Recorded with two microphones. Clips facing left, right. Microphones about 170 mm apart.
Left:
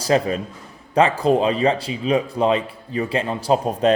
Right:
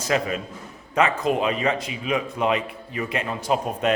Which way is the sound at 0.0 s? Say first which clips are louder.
Left 5 dB; 35° left (ahead or behind).